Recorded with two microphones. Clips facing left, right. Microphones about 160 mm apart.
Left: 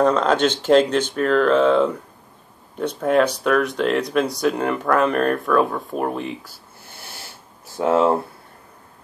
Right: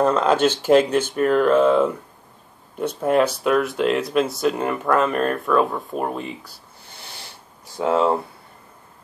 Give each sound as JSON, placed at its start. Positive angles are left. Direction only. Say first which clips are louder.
{"t": 0.0, "sound": "speech", "louder": "even", "side_deg": -5}
{"t": 7.7, "sound": "speech", "louder": "left 2 dB", "side_deg": 5}